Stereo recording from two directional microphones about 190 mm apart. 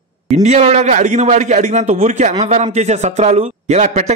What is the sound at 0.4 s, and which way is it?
Speech, 35° right (ahead or behind).